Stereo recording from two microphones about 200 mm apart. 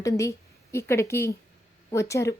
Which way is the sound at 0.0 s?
15° left (ahead or behind).